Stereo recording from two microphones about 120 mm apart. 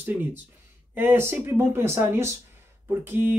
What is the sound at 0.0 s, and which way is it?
Speech, 15° right (ahead or behind).